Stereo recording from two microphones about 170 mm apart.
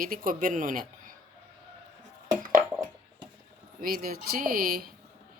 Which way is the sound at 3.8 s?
60° right (ahead or behind).